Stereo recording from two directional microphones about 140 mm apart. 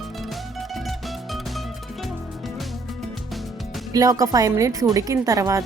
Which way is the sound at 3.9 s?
25° right (ahead or behind).